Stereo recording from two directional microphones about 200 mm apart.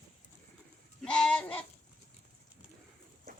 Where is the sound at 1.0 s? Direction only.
5° left (ahead or behind).